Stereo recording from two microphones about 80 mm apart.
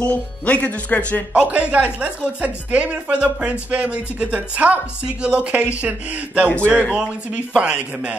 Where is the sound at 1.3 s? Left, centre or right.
Centre.